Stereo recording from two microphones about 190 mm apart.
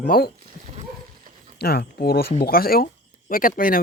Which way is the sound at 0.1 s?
50° left (ahead or behind).